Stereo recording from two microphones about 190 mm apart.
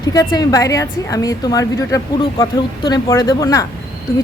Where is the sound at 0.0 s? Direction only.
20° left (ahead or behind).